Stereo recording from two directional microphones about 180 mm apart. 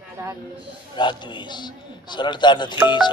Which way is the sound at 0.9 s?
25° left (ahead or behind).